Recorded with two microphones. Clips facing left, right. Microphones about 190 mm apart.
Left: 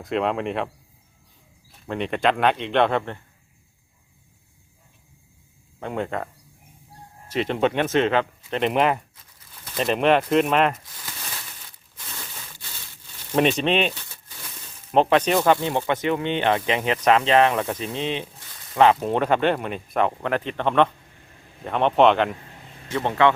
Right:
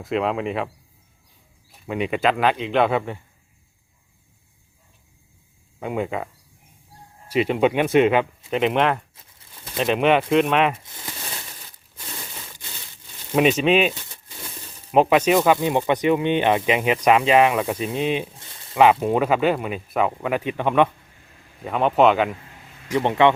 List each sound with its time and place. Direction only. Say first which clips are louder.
0.0 s speech: right 1 dB; centre (ahead or behind)
1.9 s speech: right 1 dB; 5° right (ahead or behind)
5.8 s speech: right 2 dB; 5° right (ahead or behind)
7.3 s speech: right 3 dB; 10° right (ahead or behind)
10.8 s a sound: right 3 dB; 25° right (ahead or behind)
13.3 s speech: right 3 dB; 5° right (ahead or behind)
14.9 s speech: right 2 dB; 10° right (ahead or behind)
23.0 s speech: right 2 dB; 20° right (ahead or behind)